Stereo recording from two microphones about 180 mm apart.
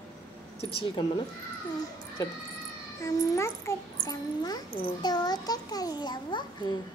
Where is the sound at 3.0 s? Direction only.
15° left (ahead or behind).